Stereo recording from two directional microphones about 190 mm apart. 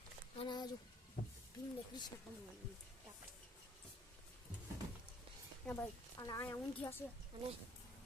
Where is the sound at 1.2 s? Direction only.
45° left (ahead or behind).